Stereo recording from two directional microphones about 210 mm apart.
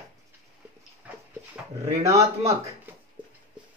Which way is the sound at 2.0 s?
15° right (ahead or behind).